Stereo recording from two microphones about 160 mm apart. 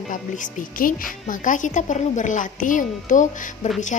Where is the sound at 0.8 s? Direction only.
55° left (ahead or behind).